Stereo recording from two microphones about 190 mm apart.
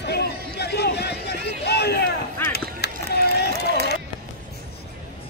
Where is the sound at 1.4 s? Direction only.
60° left (ahead or behind).